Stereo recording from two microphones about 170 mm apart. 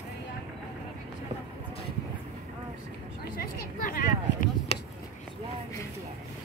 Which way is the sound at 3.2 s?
60° left (ahead or behind).